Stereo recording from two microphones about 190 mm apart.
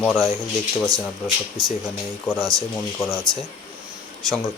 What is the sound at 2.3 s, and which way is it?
Speech, 10° left (ahead or behind).